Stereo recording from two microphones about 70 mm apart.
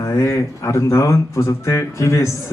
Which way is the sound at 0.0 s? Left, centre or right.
Left.